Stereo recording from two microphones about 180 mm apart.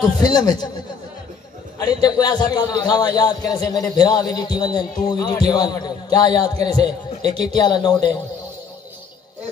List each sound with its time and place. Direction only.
0.2 s a man's voice: 20° left (ahead or behind)
1.9 s a man's voice: 20° left (ahead or behind)